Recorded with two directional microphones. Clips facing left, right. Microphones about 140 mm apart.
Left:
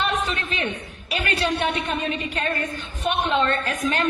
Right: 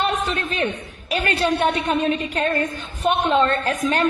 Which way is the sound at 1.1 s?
45° right (ahead or behind).